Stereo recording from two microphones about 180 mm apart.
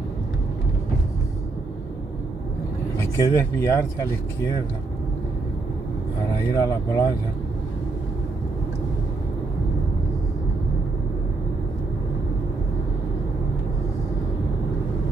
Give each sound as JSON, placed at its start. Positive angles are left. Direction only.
{"t": 3.0, "sound": "speech", "side_deg": 15}
{"t": 6.5, "sound": "speech", "side_deg": 20}